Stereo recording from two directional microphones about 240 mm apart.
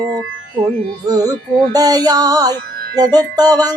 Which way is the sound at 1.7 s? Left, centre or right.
Centre.